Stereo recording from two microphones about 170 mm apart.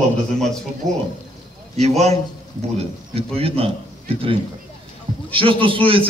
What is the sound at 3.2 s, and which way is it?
A man's voice, 35° right (ahead or behind).